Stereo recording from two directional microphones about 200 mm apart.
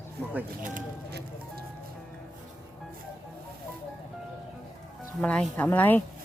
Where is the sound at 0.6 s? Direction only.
50° right (ahead or behind).